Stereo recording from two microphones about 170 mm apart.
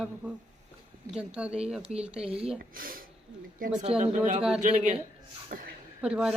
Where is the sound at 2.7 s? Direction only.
55° right (ahead or behind).